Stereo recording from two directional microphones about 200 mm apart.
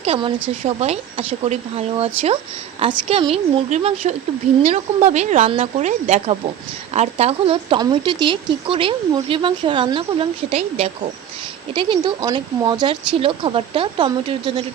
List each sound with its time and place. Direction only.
0.0 s speech: 30° right (ahead or behind)